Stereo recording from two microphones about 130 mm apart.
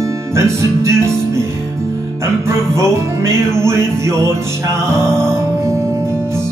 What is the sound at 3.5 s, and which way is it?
Music, 20° right (ahead or behind).